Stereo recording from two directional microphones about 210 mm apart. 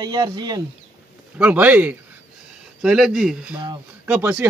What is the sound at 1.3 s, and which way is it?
A man's voice, 10° right (ahead or behind).